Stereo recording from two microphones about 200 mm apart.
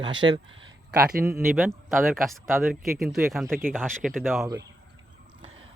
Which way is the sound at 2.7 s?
Centre (ahead or behind).